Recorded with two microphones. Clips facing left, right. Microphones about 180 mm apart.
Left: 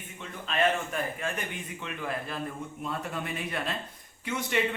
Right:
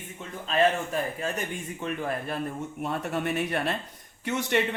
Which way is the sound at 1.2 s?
45° right (ahead or behind).